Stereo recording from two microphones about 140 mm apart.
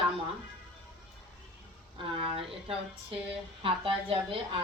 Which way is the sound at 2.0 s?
40° right (ahead or behind).